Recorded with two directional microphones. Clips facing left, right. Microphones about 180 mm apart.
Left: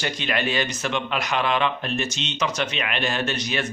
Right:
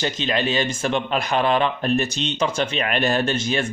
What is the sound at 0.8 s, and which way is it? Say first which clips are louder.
A man's voice: right 4 dB; 35° right (ahead or behind).